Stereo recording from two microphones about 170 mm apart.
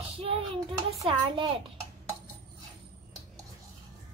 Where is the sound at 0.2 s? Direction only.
35° right (ahead or behind).